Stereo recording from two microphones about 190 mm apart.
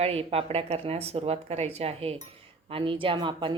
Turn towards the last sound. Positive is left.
turn(degrees=-25)  # may be behind; listen again after turning